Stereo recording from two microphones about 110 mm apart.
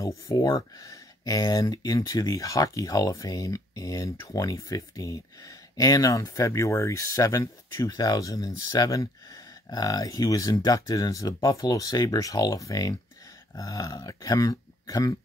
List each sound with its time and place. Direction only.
0.3 s speech: 35° left (ahead or behind)